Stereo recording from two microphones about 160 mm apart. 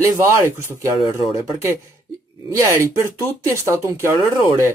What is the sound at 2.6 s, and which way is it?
Speech, 15° right (ahead or behind).